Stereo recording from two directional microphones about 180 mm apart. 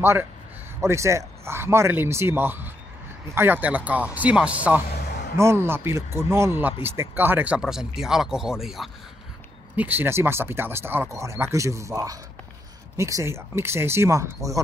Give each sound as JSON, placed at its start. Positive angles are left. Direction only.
{"t": 0.0, "sound": "speech", "side_deg": -15}
{"t": 4.9, "sound": "music", "side_deg": 65}
{"t": 5.4, "sound": "speech", "side_deg": -15}